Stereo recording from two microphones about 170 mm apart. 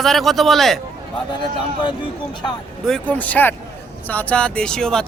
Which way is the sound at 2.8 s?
5° left (ahead or behind).